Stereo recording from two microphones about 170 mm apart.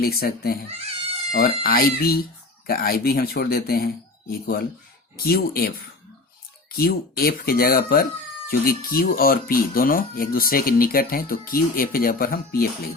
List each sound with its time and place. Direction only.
0.0 s speech: 65° left (ahead or behind)